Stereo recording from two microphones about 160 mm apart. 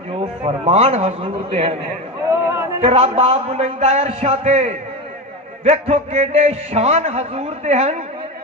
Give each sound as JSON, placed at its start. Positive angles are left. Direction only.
{"t": 0.1, "sound": "a man's voice", "side_deg": -40}
{"t": 2.3, "sound": "a sound", "side_deg": -15}
{"t": 2.8, "sound": "a man's voice", "side_deg": -40}